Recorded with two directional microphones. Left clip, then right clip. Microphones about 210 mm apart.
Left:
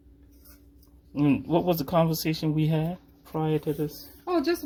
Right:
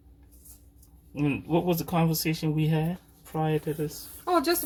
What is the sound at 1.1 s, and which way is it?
Speech, 40° left (ahead or behind).